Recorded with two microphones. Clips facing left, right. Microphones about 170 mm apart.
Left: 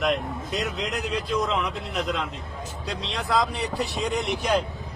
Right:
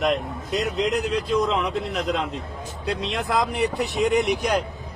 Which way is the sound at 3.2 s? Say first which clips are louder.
Even; 20° right (ahead or behind).